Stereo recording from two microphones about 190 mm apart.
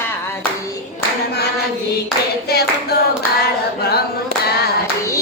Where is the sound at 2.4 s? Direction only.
55° left (ahead or behind).